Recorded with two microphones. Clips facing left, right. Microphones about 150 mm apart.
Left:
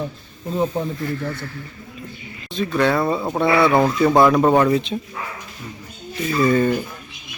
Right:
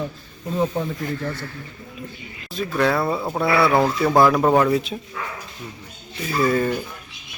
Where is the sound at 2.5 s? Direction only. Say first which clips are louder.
Left 2 dB; centre (ahead or behind).